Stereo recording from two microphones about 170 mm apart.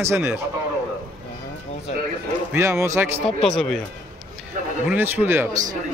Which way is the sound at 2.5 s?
15° right (ahead or behind).